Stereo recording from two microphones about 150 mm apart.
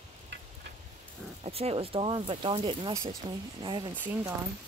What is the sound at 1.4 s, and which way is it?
Speech, 40° right (ahead or behind).